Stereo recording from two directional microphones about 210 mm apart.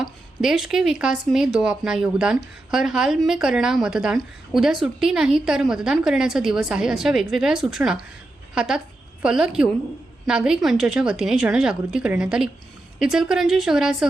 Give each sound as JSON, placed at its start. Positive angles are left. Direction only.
{"t": 0.0, "sound": "speech", "side_deg": 0}